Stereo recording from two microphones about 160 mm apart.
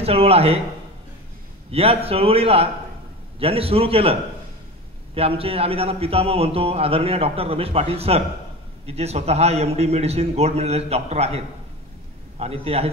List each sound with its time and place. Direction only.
0.0 s a man's voice: 40° right (ahead or behind)
1.7 s a man's voice: 35° right (ahead or behind)